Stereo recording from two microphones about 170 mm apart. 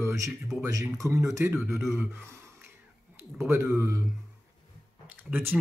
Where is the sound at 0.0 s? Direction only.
20° right (ahead or behind).